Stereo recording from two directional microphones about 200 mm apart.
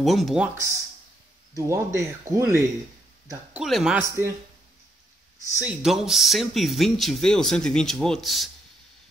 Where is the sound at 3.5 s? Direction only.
Centre (ahead or behind).